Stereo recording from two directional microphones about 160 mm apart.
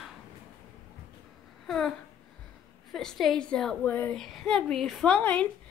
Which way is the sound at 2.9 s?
Centre (ahead or behind).